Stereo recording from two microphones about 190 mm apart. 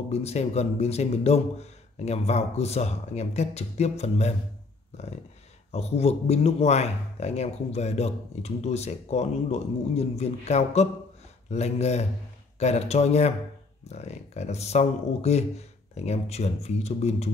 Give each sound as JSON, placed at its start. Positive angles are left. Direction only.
{"t": 0.1, "sound": "speech", "side_deg": 35}